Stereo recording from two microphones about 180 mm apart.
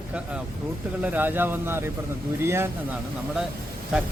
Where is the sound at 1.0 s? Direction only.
10° right (ahead or behind).